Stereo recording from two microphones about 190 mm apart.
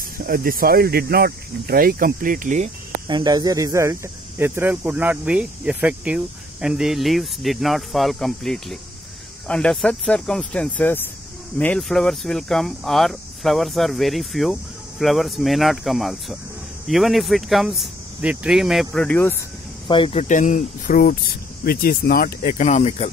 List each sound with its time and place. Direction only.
0.2 s speech: 50° right (ahead or behind)
3.1 s speech: 20° right (ahead or behind); by 19.3 s 5° left (ahead or behind)
19.9 s speech: 30° left (ahead or behind)